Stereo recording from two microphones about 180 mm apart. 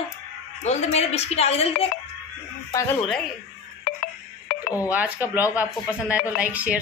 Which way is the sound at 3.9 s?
50° left (ahead or behind).